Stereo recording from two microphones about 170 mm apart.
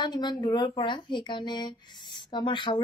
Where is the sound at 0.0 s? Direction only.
25° left (ahead or behind).